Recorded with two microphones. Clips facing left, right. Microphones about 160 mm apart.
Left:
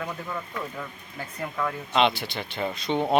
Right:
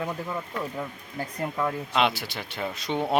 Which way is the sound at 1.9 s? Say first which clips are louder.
Left 3 dB; 5° right (ahead or behind).